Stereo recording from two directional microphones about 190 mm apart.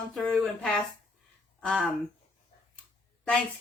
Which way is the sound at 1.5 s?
5° left (ahead or behind).